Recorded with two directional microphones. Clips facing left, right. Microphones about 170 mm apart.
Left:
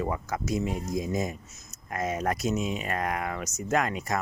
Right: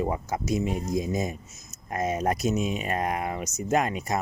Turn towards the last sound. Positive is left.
turn(degrees=-20)  # may be behind; listen again after turning